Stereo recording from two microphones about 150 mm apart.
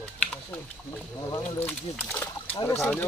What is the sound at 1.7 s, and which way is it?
Speech, 10° left (ahead or behind).